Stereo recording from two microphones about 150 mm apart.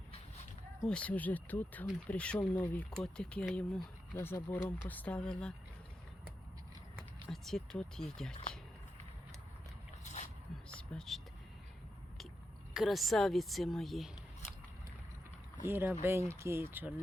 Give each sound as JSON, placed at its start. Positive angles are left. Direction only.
{"t": 0.9, "sound": "speech", "side_deg": 10}
{"t": 7.3, "sound": "speech", "side_deg": 0}
{"t": 10.0, "sound": "a sound", "side_deg": 50}
{"t": 10.7, "sound": "a sound", "side_deg": 5}
{"t": 12.7, "sound": "speech", "side_deg": 0}
{"t": 15.6, "sound": "speech", "side_deg": -15}